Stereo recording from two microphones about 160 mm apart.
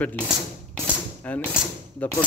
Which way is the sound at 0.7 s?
10° left (ahead or behind).